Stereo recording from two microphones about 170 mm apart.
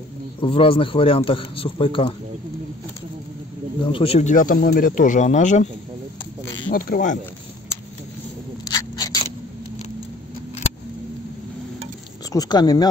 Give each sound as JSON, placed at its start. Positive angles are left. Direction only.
{"t": 0.4, "sound": "a man's voice", "side_deg": 30}
{"t": 3.9, "sound": "speech", "side_deg": 35}
{"t": 6.7, "sound": "speech", "side_deg": 55}
{"t": 8.6, "sound": "a sound", "side_deg": 20}
{"t": 12.3, "sound": "speech", "side_deg": 25}